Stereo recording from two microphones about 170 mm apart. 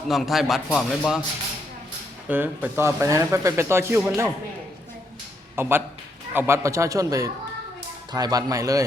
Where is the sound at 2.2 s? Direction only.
10° right (ahead or behind).